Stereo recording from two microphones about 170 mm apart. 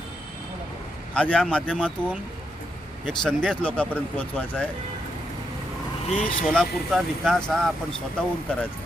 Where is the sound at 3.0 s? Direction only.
5° left (ahead or behind).